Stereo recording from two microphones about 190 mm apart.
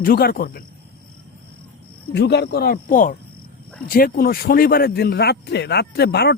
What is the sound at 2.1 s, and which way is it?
A man's voice, 60° left (ahead or behind).